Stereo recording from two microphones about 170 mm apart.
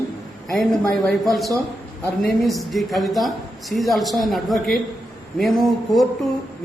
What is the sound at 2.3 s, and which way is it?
A woman's voice, centre (ahead or behind).